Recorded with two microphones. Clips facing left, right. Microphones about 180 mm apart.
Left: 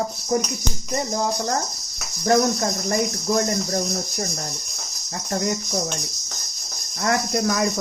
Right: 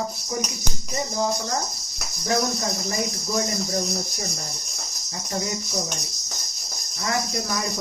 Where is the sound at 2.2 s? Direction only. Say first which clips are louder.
Left 6 dB; 55° left (ahead or behind).